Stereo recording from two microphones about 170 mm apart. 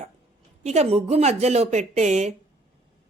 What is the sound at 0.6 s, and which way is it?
A woman's voice, 40° right (ahead or behind).